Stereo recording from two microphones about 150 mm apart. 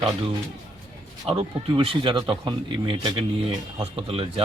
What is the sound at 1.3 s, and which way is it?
Speech, 35° right (ahead or behind).